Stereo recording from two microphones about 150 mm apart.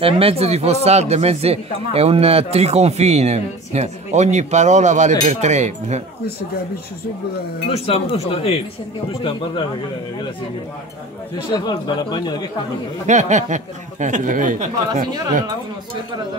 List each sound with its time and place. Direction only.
0.0 s a man's voice: 40° right (ahead or behind)
7.7 s speech: 45° left (ahead or behind)
11.5 s speech: 30° left (ahead or behind)
13.0 s speech: 55° right (ahead or behind)